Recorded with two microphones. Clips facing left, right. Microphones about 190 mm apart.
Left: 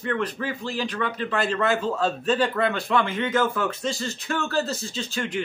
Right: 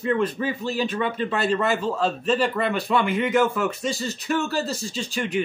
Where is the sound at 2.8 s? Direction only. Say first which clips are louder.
Right 2 dB; 15° right (ahead or behind).